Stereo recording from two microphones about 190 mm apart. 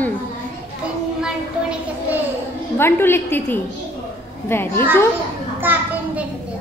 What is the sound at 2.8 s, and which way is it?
A woman's voice, 10° left (ahead or behind).